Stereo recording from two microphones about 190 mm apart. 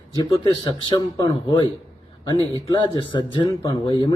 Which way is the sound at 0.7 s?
20° left (ahead or behind).